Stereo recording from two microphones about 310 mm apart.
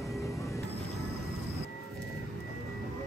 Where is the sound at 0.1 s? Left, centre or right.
Centre.